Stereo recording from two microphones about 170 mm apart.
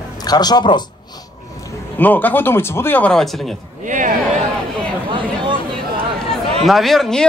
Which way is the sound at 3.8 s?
50° right (ahead or behind).